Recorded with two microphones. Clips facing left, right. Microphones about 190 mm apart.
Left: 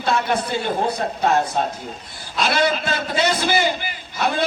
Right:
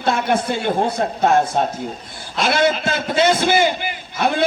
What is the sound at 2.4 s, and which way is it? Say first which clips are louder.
A man's voice: right 3 dB; 50° right (ahead or behind).